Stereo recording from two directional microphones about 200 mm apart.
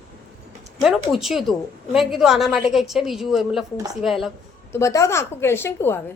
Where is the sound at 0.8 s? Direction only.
Centre (ahead or behind).